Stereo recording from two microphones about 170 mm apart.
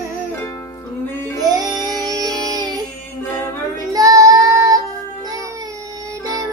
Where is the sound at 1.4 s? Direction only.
25° right (ahead or behind).